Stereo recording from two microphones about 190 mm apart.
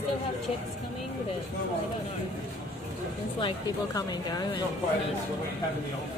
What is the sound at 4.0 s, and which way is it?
Speech, 20° left (ahead or behind).